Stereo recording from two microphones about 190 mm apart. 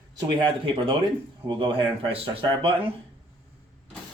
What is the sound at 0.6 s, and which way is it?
Speech, 25° right (ahead or behind).